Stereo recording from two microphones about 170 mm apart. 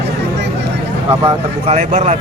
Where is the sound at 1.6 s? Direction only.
40° right (ahead or behind).